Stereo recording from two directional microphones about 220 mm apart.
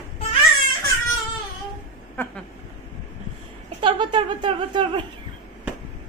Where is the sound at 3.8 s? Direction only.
20° right (ahead or behind).